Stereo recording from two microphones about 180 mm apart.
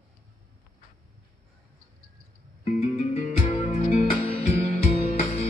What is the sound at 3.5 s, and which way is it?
Music, 30° left (ahead or behind).